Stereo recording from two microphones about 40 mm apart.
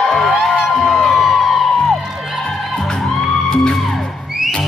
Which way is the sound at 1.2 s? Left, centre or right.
Centre.